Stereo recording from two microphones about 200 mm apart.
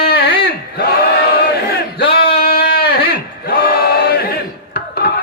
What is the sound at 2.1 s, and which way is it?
Male singing, 50° left (ahead or behind).